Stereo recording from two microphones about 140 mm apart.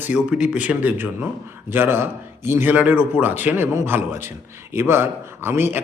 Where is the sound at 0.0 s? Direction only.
10° right (ahead or behind).